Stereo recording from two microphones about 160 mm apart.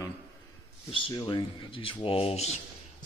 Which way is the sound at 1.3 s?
30° left (ahead or behind).